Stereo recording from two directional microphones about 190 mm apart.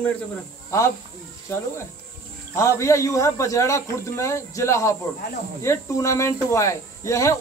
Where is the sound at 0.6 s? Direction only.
15° left (ahead or behind).